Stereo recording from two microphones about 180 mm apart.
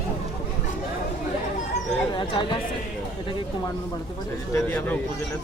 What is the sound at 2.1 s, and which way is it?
Speech, 25° left (ahead or behind).